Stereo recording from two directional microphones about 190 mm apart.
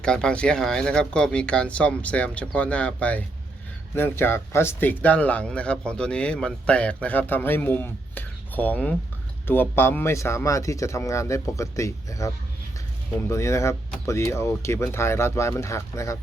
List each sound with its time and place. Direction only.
0.0 s speech: 5° left (ahead or behind)